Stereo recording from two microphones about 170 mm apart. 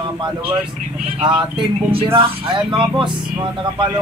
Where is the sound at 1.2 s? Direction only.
30° right (ahead or behind).